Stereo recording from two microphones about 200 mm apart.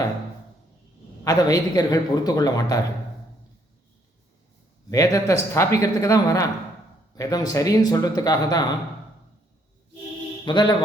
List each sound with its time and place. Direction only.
1.2 s a man's voice: 20° left (ahead or behind)
4.9 s speech: 15° left (ahead or behind)
10.4 s a man's voice: 20° left (ahead or behind)